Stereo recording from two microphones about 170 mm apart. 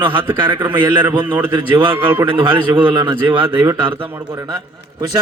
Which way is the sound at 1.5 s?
30° right (ahead or behind).